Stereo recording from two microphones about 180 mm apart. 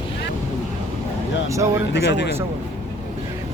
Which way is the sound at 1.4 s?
15° right (ahead or behind).